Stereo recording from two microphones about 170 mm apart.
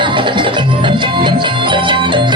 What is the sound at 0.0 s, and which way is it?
Music, 30° right (ahead or behind).